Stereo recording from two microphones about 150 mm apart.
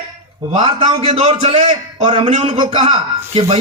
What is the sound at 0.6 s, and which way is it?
A man's voice, 40° right (ahead or behind).